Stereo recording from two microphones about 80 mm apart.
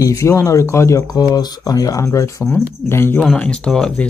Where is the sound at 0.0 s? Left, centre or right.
Left.